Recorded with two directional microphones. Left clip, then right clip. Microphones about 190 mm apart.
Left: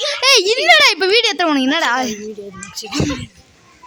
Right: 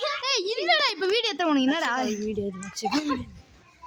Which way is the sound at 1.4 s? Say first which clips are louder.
Left 9 dB; 5° left (ahead or behind).